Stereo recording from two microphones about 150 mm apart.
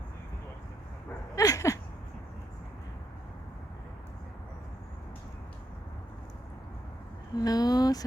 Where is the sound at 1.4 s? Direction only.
20° left (ahead or behind).